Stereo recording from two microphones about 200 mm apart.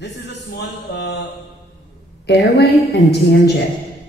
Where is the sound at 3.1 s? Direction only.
55° left (ahead or behind).